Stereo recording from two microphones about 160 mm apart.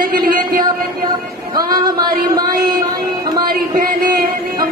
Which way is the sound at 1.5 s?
25° right (ahead or behind).